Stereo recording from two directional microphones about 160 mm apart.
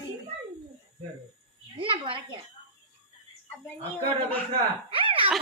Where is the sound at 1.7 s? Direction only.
35° right (ahead or behind).